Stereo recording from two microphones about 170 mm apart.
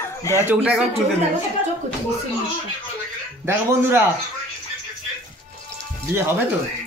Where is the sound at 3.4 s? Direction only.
15° right (ahead or behind).